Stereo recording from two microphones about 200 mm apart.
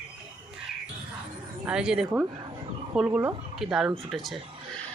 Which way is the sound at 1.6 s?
5° right (ahead or behind).